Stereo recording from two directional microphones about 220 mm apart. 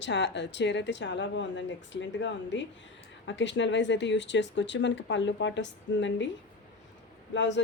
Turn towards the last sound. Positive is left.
turn(degrees=55)  # may be behind; listen again after turning